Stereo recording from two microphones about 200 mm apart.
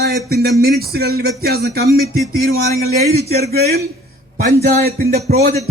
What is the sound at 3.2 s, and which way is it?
Speech, 55° right (ahead or behind).